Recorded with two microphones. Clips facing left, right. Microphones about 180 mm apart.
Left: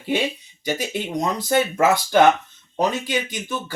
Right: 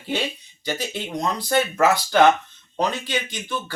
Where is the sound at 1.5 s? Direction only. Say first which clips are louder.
Left 1 dB; 15° left (ahead or behind).